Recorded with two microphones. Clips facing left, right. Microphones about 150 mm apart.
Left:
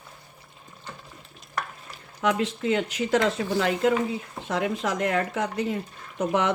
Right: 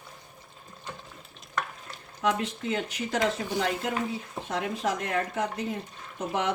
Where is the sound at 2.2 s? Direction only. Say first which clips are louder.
Left 3 dB; 90° left.